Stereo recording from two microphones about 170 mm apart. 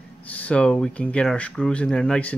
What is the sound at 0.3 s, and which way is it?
Speech, 10° left (ahead or behind).